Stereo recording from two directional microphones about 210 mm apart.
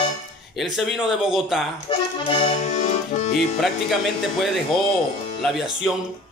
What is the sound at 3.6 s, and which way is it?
Speech, centre (ahead or behind).